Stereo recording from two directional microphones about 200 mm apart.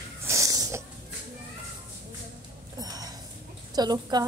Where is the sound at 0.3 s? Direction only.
15° right (ahead or behind).